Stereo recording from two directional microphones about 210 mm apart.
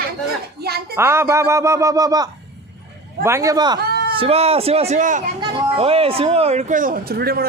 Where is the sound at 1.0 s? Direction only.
10° right (ahead or behind).